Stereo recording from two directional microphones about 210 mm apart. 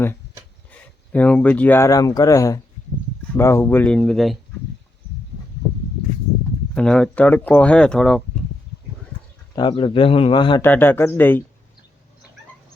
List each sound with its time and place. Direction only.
0.7 s speech: 5° left (ahead or behind)
6.7 s speech: 5° left (ahead or behind)
9.6 s a man's voice: 20° left (ahead or behind)
10.6 s speech: 10° left (ahead or behind)